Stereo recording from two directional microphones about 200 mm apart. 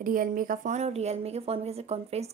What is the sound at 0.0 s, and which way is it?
Speech, 45° right (ahead or behind).